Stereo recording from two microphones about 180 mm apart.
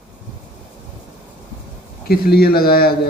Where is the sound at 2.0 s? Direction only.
60° left (ahead or behind).